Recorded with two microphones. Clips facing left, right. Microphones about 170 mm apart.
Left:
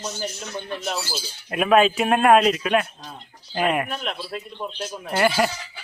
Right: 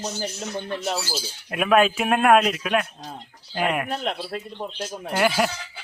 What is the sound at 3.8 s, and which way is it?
Speech, 35° right (ahead or behind).